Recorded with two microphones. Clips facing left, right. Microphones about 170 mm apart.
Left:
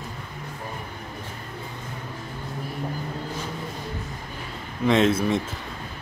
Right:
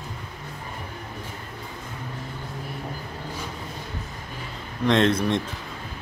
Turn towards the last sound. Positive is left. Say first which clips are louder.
# even
turn(degrees=5)  # may be behind; listen again after turning